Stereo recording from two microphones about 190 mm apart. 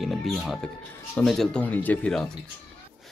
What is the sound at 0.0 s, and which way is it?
Speech, centre (ahead or behind).